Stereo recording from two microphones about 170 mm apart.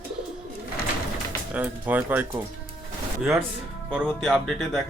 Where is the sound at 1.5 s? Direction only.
10° right (ahead or behind).